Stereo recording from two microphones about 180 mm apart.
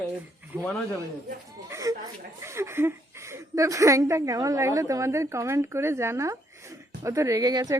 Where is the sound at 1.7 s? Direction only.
20° right (ahead or behind).